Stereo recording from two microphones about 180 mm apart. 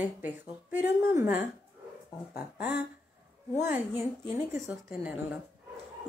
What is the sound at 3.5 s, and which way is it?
Speech, 40° left (ahead or behind).